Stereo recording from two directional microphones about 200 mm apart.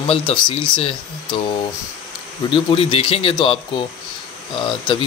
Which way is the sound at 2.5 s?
25° left (ahead or behind).